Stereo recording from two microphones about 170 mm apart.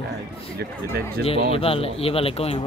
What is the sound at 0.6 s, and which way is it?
Speech, 70° right (ahead or behind).